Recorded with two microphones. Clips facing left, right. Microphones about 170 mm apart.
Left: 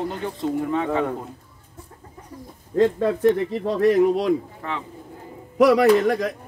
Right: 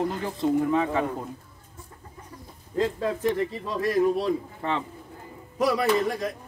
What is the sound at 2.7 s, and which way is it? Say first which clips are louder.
A man's voice: left 7 dB; 65° left (ahead or behind).